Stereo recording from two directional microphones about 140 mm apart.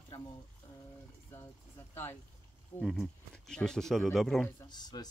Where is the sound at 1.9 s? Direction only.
15° left (ahead or behind).